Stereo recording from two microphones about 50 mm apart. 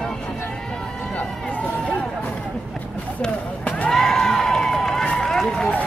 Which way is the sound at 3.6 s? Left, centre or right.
Left.